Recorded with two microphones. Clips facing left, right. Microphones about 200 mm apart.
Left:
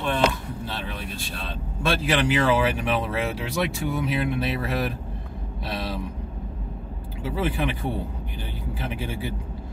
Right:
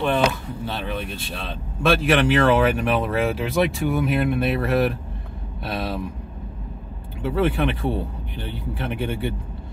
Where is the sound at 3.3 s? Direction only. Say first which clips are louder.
Right 6 dB; 60° right (ahead or behind).